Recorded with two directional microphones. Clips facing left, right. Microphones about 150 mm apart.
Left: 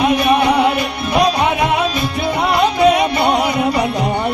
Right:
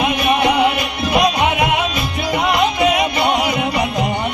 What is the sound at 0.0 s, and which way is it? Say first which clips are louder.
Music: left 3 dB; 35° left (ahead or behind).